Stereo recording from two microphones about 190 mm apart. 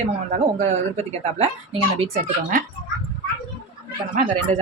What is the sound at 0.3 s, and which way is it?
Speech, 35° right (ahead or behind).